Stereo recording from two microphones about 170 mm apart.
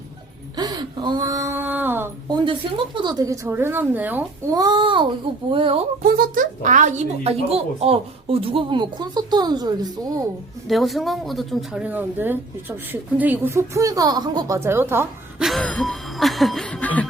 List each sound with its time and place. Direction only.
0.5 s a sound: 25° right (ahead or behind)
2.3 s a woman's voice: 30° right (ahead or behind); by 4.3 s 10° right (ahead or behind)
4.5 s a child's voice: 25° right (ahead or behind)
6.0 s speech: 60° right (ahead or behind); by 10.2 s 20° right (ahead or behind)
10.7 s a woman's voice: centre (ahead or behind)
15.4 s music: 5° left (ahead or behind)